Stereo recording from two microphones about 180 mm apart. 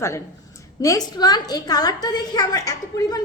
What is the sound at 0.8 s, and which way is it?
A woman's voice, 20° left (ahead or behind).